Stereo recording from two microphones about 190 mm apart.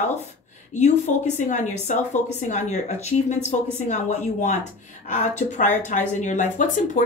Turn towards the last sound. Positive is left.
turn(degrees=40)  # may be behind; listen again after turning